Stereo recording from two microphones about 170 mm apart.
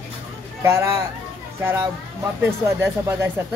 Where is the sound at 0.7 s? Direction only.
15° right (ahead or behind).